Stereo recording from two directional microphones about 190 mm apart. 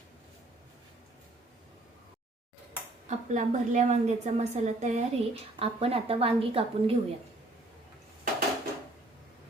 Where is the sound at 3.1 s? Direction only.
40° right (ahead or behind).